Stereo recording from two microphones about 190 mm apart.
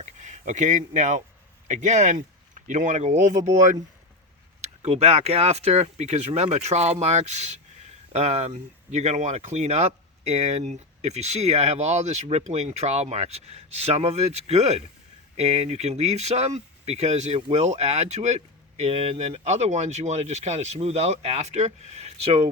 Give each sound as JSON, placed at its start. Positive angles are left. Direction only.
{"t": 0.0, "sound": "speech", "side_deg": -40}